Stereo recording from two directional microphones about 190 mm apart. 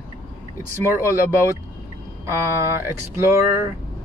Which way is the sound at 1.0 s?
10° right (ahead or behind).